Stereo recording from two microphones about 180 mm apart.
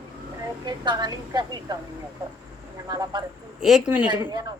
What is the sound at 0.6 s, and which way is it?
A woman's voice, 25° right (ahead or behind).